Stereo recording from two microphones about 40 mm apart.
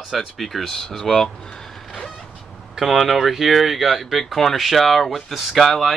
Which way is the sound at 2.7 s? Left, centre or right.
Centre.